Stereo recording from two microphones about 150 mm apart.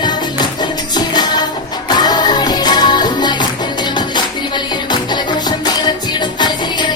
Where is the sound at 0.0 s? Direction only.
30° left (ahead or behind).